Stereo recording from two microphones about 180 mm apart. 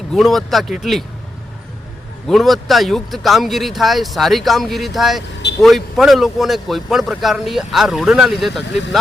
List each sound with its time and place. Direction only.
0.1 s a man's voice: centre (ahead or behind)
2.2 s a man's voice: centre (ahead or behind)